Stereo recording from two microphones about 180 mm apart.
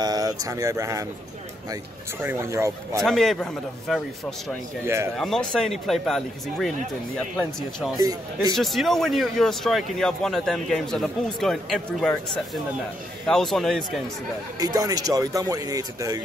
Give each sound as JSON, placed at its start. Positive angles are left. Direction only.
{"t": 0.0, "sound": "speech", "side_deg": -20}
{"t": 2.2, "sound": "speech", "side_deg": -15}
{"t": 3.0, "sound": "speech", "side_deg": 0}
{"t": 4.8, "sound": "speech", "side_deg": -15}
{"t": 5.1, "sound": "speech", "side_deg": 5}
{"t": 8.0, "sound": "speech", "side_deg": -20}
{"t": 8.5, "sound": "speech", "side_deg": 0}
{"t": 13.3, "sound": "speech", "side_deg": 0}
{"t": 14.6, "sound": "speech", "side_deg": -20}